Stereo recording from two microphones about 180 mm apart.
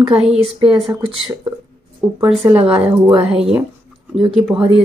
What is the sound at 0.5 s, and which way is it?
Speech, 30° right (ahead or behind).